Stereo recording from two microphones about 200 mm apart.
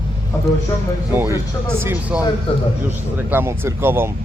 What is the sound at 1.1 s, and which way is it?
A man's voice, 10° right (ahead or behind).